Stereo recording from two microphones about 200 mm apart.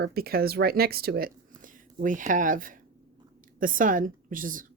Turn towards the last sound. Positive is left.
turn(degrees=-45)  # may be behind; listen again after turning